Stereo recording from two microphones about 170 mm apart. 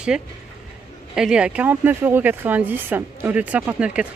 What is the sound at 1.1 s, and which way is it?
Speech, 5° right (ahead or behind).